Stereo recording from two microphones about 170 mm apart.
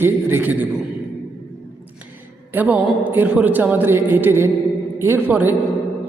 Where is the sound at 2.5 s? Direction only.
10° right (ahead or behind).